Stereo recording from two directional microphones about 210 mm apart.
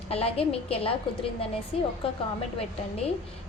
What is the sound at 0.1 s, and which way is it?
Speech, 30° left (ahead or behind).